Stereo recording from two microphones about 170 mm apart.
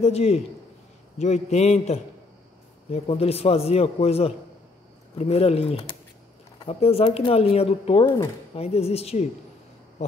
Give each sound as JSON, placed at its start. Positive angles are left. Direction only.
{"t": 0.0, "sound": "speech", "side_deg": 40}